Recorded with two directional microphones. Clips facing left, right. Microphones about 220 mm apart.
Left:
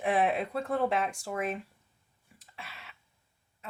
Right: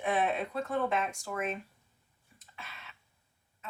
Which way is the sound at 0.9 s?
30° left (ahead or behind).